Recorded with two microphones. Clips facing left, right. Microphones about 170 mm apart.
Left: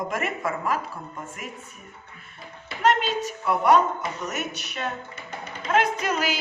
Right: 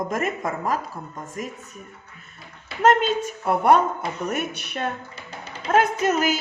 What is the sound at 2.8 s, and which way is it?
A woman's voice, 50° right (ahead or behind).